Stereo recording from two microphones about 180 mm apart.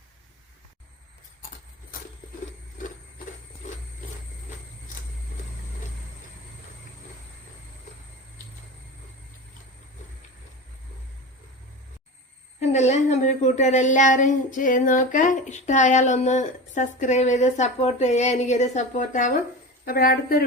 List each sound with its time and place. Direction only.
12.5 s speech: 40° left (ahead or behind)
19.8 s a woman's voice: 55° left (ahead or behind)